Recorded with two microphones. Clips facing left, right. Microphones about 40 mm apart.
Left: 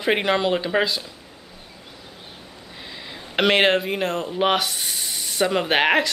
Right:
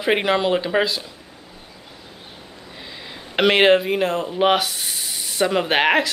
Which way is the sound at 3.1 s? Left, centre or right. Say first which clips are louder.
Right 2 dB; centre.